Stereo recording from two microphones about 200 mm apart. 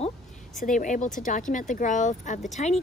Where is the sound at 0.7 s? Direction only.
40° left (ahead or behind).